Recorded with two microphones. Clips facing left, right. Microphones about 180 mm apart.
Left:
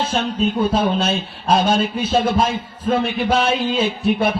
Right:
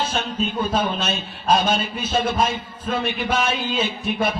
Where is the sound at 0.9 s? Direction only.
30° left (ahead or behind).